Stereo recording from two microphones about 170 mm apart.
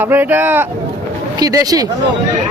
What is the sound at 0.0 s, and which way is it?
Speech, 10° right (ahead or behind).